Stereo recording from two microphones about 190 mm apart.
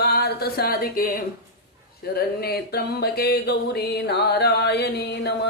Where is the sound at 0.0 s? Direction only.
55° left (ahead or behind).